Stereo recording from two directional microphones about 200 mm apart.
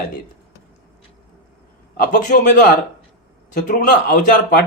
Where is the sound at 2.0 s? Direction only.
45° left (ahead or behind).